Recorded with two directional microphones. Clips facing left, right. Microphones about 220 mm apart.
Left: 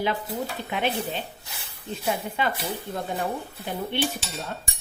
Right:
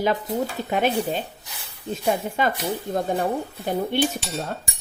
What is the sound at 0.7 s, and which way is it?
Speech, 45° right (ahead or behind).